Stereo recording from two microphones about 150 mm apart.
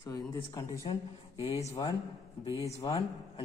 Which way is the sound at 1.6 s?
20° left (ahead or behind).